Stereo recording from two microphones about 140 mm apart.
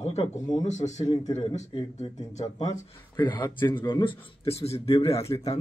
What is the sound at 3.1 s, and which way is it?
Speech, 30° left (ahead or behind).